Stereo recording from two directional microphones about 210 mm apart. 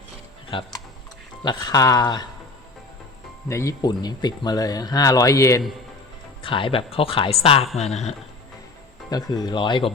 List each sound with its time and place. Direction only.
0.5 s speech: 25° left (ahead or behind)
3.5 s speech: 15° left (ahead or behind); by 8.1 s 30° left (ahead or behind)
9.0 s speech: 20° left (ahead or behind)